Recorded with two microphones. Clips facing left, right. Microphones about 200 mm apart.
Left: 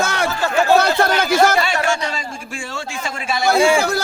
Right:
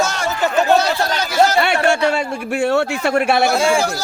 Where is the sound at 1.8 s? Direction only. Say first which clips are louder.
Right 6 dB; 65° right (ahead or behind).